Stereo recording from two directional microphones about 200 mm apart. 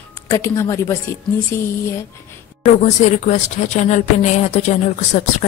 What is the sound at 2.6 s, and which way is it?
Speech, 35° left (ahead or behind).